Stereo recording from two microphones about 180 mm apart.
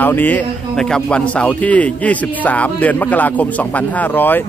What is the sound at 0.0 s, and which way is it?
A man's voice, 10° left (ahead or behind).